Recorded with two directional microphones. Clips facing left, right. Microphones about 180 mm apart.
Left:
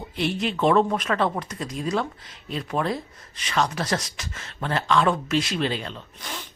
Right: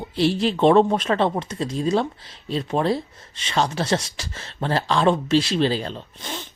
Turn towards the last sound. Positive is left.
turn(degrees=-25)  # may be behind; listen again after turning